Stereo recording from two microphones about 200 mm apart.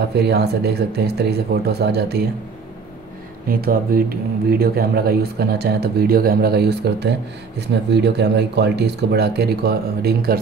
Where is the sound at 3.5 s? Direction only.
45° right (ahead or behind).